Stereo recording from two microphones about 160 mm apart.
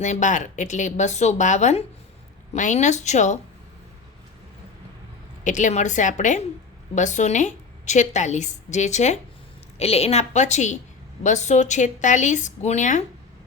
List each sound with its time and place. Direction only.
0.0 s a woman's voice: 50° left (ahead or behind)
5.4 s a woman's voice: 50° left (ahead or behind)